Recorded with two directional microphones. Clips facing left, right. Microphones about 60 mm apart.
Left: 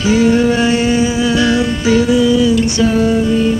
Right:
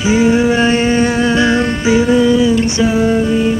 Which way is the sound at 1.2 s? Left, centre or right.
Right.